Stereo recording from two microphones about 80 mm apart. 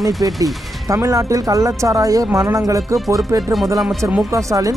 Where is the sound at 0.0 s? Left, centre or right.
Right.